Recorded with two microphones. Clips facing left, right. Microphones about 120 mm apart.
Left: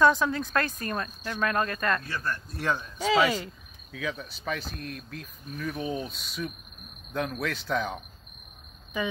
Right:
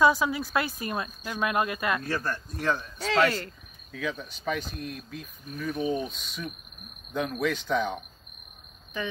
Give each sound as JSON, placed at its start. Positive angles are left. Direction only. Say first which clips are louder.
{"t": 0.0, "sound": "speech", "louder": "even", "side_deg": -10}
{"t": 2.0, "sound": "speech", "louder": "right 3 dB", "side_deg": -40}
{"t": 2.5, "sound": "a man's voice", "louder": "right 2 dB", "side_deg": 10}